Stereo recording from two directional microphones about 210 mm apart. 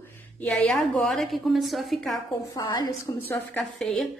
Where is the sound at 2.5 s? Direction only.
15° left (ahead or behind).